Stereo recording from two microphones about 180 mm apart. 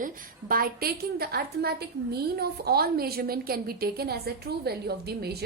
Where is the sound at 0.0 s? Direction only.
55° right (ahead or behind).